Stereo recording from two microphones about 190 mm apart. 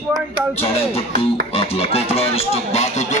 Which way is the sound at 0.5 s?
30° left (ahead or behind).